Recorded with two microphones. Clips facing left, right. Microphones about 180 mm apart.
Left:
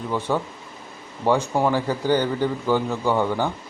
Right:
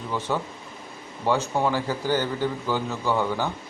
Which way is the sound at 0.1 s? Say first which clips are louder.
Left 3 dB; 15° left (ahead or behind).